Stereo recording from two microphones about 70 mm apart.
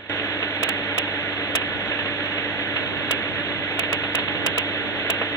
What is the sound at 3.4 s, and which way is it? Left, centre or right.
Engine, left.